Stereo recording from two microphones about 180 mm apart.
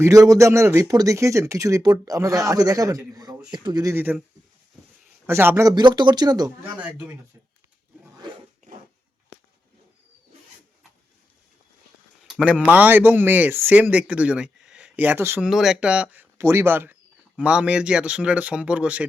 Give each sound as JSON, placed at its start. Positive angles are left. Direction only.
{"t": 0.0, "sound": "speech", "side_deg": -20}
{"t": 5.2, "sound": "speech", "side_deg": -10}
{"t": 6.7, "sound": "speech", "side_deg": -10}
{"t": 12.3, "sound": "speech", "side_deg": -5}
{"t": 15.4, "sound": "speech", "side_deg": 0}